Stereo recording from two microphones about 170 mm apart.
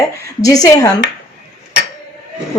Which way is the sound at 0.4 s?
20° left (ahead or behind).